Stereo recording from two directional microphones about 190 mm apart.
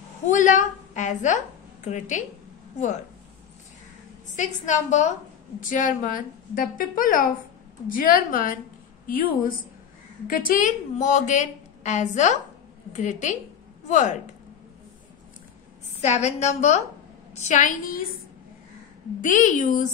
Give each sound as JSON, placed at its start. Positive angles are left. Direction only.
{"t": 0.3, "sound": "a woman's voice", "side_deg": 40}
{"t": 4.4, "sound": "a woman's voice", "side_deg": 40}
{"t": 16.0, "sound": "a woman's voice", "side_deg": 35}
{"t": 19.2, "sound": "a woman's voice", "side_deg": 40}